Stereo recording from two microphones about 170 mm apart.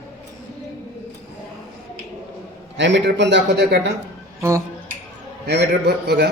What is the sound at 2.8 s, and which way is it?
A man's voice, 90° right.